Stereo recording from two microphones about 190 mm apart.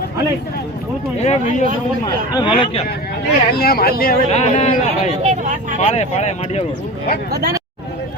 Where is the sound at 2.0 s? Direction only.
20° left (ahead or behind).